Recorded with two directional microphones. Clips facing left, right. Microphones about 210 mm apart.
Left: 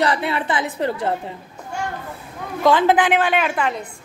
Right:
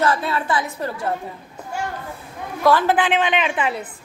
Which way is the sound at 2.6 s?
20° left (ahead or behind).